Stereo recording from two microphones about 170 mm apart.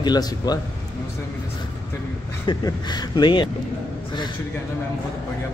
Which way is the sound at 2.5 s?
25° left (ahead or behind).